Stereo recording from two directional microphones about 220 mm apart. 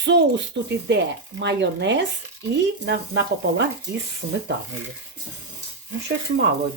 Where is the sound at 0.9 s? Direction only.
50° right (ahead or behind).